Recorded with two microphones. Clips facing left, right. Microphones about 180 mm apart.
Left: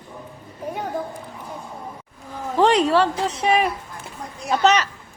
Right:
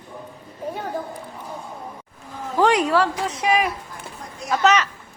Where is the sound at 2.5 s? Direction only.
25° left (ahead or behind).